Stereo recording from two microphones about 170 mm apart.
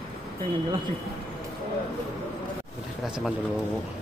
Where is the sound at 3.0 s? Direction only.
Centre (ahead or behind).